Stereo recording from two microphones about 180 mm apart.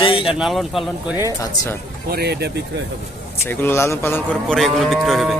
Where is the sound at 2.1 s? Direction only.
65° right (ahead or behind).